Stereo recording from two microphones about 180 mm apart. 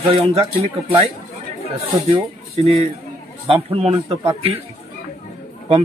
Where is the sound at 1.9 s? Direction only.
35° right (ahead or behind).